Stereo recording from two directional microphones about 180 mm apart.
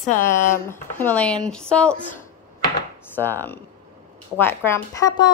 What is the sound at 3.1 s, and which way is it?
A woman's voice, 10° left (ahead or behind).